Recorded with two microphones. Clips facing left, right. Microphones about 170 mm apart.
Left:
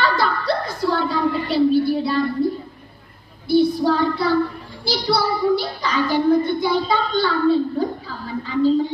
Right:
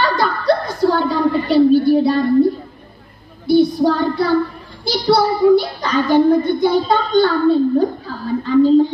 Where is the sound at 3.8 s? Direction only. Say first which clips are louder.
Right 3 dB; 50° right (ahead or behind).